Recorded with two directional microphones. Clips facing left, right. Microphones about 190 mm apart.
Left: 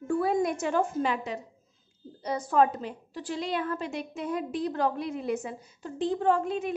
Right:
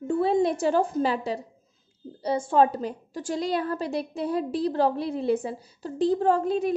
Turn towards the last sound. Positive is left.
turn(degrees=-35)  # may be behind; listen again after turning